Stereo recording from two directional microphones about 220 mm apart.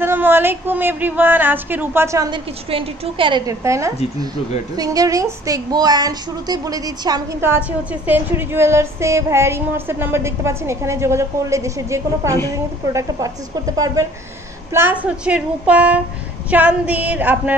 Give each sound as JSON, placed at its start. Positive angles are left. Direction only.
{"t": 0.0, "sound": "a woman's voice", "side_deg": -10}